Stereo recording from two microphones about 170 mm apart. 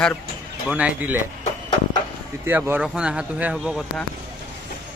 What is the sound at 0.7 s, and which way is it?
Speech, 10° right (ahead or behind).